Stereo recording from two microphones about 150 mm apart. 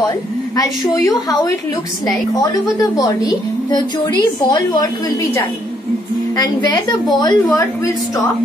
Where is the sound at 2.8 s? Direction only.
25° left (ahead or behind).